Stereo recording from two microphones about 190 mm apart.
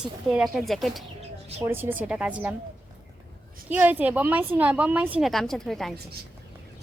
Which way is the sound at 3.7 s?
10° right (ahead or behind).